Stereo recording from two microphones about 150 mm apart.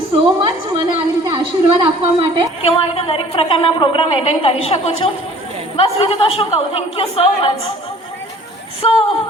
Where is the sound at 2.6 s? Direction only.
40° left (ahead or behind).